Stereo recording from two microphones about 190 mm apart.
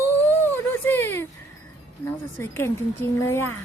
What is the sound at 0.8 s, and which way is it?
Speech, 10° left (ahead or behind).